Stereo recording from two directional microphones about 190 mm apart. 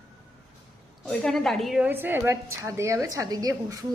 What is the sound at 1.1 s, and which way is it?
A woman's voice, 5° left (ahead or behind).